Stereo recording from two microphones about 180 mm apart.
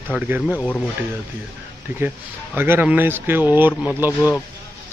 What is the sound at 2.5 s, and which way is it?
Speech, 10° right (ahead or behind).